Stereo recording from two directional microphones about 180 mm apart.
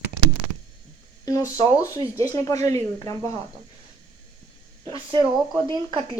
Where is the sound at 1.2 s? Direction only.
20° left (ahead or behind).